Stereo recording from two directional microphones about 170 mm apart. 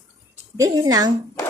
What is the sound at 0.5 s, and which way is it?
Speech, 20° right (ahead or behind).